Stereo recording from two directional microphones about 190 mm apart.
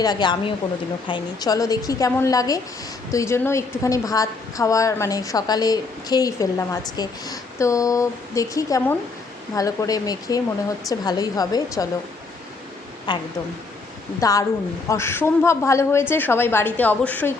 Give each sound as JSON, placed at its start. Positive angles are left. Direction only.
{"t": 0.0, "sound": "a woman's voice", "side_deg": 20}
{"t": 13.1, "sound": "a woman's voice", "side_deg": 25}